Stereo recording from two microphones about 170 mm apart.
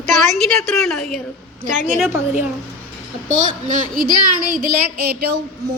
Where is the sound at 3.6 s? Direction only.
50° right (ahead or behind).